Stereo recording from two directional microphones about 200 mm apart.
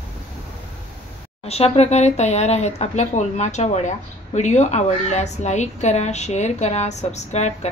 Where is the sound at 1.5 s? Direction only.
30° left (ahead or behind).